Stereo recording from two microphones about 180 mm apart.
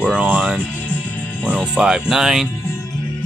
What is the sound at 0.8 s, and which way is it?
Music, 10° left (ahead or behind).